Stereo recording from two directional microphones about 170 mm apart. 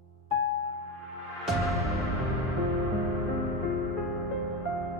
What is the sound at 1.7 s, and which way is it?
Music, 20° right (ahead or behind).